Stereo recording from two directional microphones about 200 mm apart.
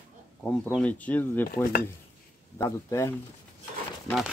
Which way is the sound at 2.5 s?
15° left (ahead or behind).